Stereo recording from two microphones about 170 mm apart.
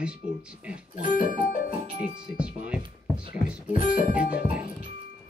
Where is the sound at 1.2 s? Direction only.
55° left (ahead or behind).